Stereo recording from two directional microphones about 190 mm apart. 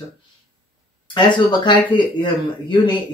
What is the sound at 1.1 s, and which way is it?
Speech, 25° left (ahead or behind).